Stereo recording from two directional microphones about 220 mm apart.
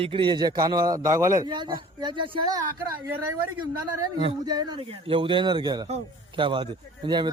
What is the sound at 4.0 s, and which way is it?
A man's voice, 20° right (ahead or behind).